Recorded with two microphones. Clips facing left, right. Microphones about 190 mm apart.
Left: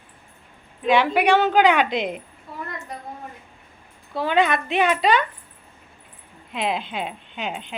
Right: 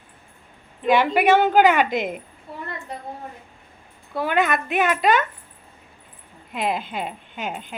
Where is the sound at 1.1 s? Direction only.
10° right (ahead or behind).